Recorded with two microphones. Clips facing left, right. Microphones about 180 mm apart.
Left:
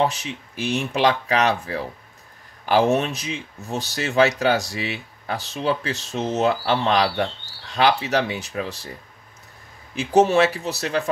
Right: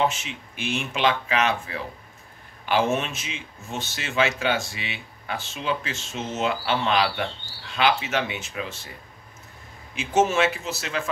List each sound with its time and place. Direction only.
0.0 s speech: 35° left (ahead or behind)
9.9 s speech: 35° left (ahead or behind)